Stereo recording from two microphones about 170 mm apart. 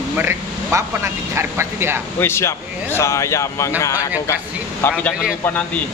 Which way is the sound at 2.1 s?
15° left (ahead or behind).